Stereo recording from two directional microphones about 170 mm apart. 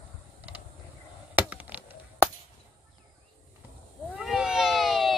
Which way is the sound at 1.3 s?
10° right (ahead or behind).